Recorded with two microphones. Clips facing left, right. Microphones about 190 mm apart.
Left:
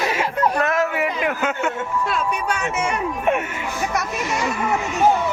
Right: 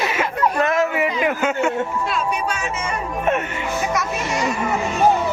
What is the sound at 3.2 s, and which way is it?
Speech, 10° left (ahead or behind).